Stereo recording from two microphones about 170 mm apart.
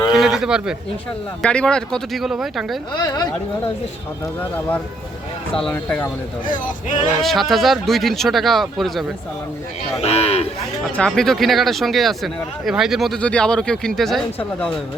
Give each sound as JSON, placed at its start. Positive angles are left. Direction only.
{"t": 0.1, "sound": "a sound", "side_deg": 0}
{"t": 1.4, "sound": "speech", "side_deg": 5}
{"t": 3.0, "sound": "speech", "side_deg": 25}
{"t": 4.4, "sound": "speech", "side_deg": 10}
{"t": 6.4, "sound": "speech", "side_deg": 50}
{"t": 7.2, "sound": "speech", "side_deg": 0}
{"t": 10.0, "sound": "speech", "side_deg": 40}
{"t": 10.8, "sound": "speech", "side_deg": 5}